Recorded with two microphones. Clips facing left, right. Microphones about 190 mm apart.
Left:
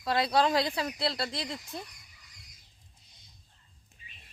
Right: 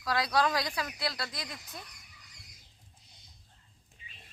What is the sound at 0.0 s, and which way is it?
Speech, 25° left (ahead or behind).